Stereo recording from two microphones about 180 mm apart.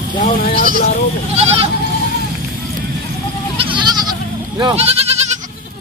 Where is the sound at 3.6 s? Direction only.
25° right (ahead or behind).